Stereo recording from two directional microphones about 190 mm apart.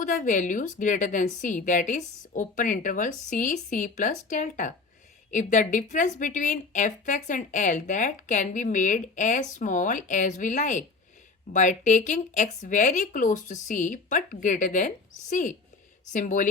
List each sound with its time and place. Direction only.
0.0 s a woman's voice: 45° left (ahead or behind)